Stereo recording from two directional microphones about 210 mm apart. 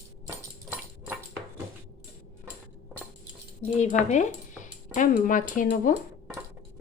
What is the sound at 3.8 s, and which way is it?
Speech, 35° left (ahead or behind).